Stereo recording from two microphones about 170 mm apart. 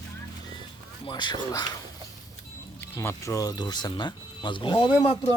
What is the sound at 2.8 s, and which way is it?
Speech, 15° left (ahead or behind).